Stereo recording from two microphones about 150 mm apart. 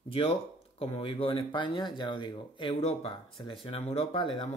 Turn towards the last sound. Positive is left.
turn(degrees=40)  # may be behind; listen again after turning